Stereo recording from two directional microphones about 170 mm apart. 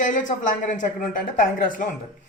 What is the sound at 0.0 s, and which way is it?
Speech, 50° left (ahead or behind).